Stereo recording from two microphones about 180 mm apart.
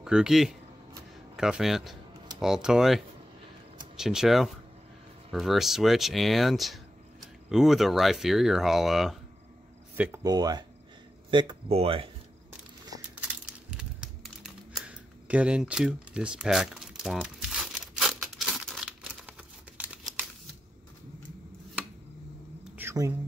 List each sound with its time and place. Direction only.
0.0 s speech: 5° right (ahead or behind)
10.2 s speech: 20° right (ahead or behind)
13.7 s crumpling: 5° right (ahead or behind)
14.9 s a sound: 5° right (ahead or behind)
19.8 s crumpling: 10° right (ahead or behind)
22.8 s a sound: 15° right (ahead or behind)